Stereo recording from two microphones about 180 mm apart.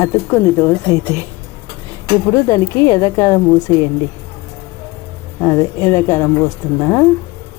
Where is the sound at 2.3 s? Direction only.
20° left (ahead or behind).